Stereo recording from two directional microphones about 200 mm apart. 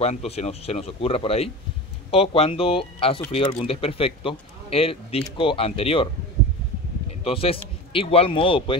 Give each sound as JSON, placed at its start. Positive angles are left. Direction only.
{"t": 0.0, "sound": "speech", "side_deg": 35}
{"t": 7.2, "sound": "speech", "side_deg": 30}